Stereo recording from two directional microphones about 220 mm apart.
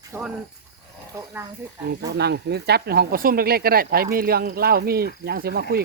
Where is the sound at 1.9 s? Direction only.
50° right (ahead or behind).